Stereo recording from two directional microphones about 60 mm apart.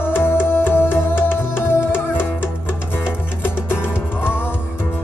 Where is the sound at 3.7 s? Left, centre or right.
Left.